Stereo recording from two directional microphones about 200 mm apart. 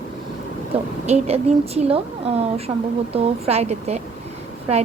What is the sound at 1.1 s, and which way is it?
A woman's voice, 30° right (ahead or behind).